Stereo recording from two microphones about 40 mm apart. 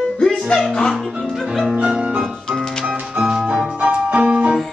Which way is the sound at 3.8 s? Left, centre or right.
Right.